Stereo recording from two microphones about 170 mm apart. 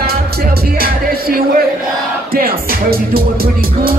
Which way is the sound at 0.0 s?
60° right (ahead or behind).